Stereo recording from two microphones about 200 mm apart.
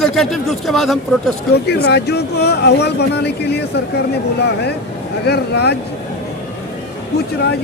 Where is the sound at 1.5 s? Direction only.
55° left (ahead or behind).